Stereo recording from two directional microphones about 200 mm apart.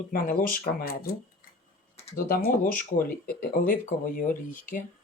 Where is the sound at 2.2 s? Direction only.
50° left (ahead or behind).